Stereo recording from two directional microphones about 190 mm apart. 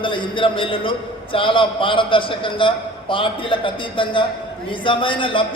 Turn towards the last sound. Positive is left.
turn(degrees=25)  # may be behind; listen again after turning